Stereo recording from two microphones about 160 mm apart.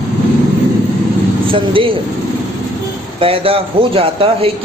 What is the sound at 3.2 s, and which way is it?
A man's voice, 35° right (ahead or behind).